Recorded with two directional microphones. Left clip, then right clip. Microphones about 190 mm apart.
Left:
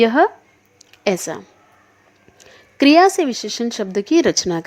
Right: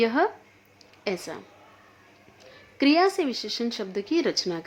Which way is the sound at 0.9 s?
40° left (ahead or behind).